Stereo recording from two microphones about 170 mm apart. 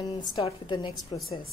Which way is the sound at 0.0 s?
25° left (ahead or behind).